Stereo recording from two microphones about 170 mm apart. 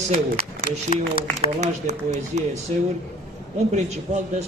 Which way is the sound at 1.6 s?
45° right (ahead or behind).